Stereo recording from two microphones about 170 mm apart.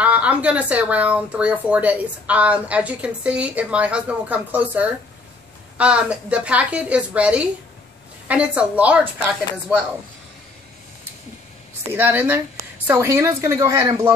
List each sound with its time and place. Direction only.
0.0 s speech: 10° right (ahead or behind)
11.9 s speech: 10° right (ahead or behind)